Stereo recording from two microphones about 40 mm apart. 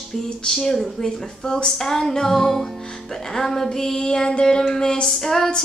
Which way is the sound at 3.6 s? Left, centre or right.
Centre.